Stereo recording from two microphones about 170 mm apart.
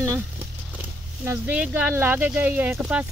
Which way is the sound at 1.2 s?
15° right (ahead or behind).